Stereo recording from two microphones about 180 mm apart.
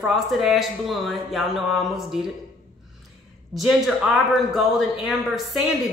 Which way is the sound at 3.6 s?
Centre (ahead or behind).